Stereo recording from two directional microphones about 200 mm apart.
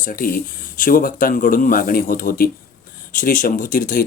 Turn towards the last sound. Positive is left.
turn(degrees=45)  # may be behind; listen again after turning